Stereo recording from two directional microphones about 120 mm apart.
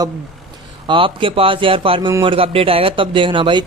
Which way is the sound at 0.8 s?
45° right (ahead or behind).